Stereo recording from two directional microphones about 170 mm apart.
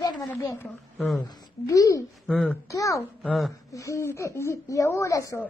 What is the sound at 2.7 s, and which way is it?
Speech, 20° left (ahead or behind).